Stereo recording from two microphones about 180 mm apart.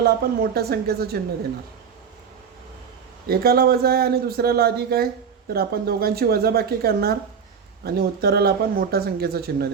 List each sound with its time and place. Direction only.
0.0 s speech: 60° right (ahead or behind)
3.2 s speech: 55° right (ahead or behind)